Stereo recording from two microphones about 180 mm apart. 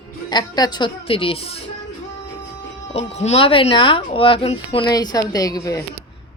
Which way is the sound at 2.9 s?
35° left (ahead or behind).